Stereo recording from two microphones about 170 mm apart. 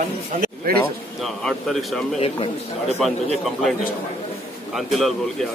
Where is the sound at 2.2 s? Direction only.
35° left (ahead or behind).